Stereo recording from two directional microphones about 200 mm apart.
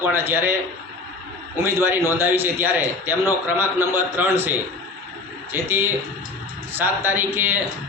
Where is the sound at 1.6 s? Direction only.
10° right (ahead or behind).